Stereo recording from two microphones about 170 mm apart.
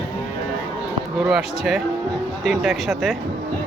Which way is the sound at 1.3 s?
Centre (ahead or behind).